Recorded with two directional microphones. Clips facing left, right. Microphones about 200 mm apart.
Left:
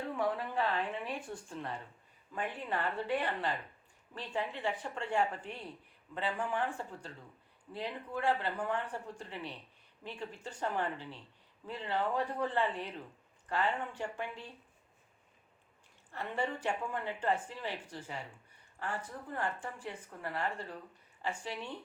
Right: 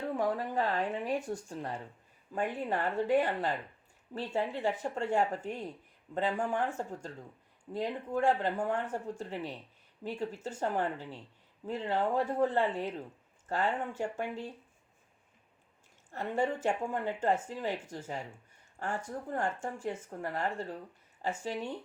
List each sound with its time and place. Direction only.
0.2 s speech: 40° right (ahead or behind)
16.1 s speech: 45° right (ahead or behind)